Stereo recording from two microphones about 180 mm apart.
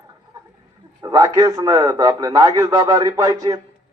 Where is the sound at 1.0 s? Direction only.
20° right (ahead or behind).